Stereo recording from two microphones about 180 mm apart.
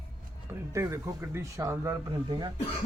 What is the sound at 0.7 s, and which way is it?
Speech, 15° right (ahead or behind).